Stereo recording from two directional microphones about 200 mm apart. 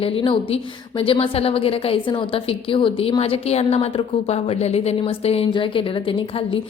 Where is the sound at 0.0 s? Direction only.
25° left (ahead or behind).